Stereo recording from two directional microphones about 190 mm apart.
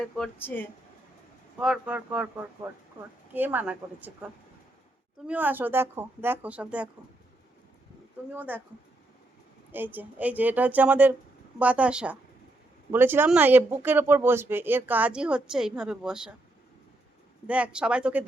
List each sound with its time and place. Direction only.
0.0 s speech: 5° left (ahead or behind)
1.5 s speech: 5° right (ahead or behind)
8.3 s speech: 10° right (ahead or behind)
9.7 s speech: 10° right (ahead or behind)
17.4 s speech: 5° right (ahead or behind)